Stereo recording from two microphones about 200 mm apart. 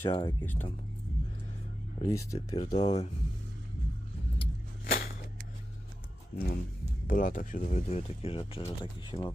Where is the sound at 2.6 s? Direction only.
30° left (ahead or behind).